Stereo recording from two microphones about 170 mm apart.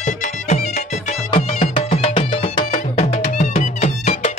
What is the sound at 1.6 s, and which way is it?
Music, 30° left (ahead or behind).